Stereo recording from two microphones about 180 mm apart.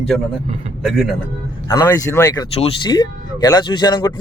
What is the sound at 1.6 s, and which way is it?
Speech, 20° left (ahead or behind).